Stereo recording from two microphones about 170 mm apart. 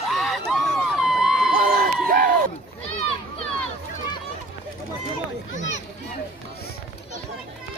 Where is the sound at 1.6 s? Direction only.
55° right (ahead or behind).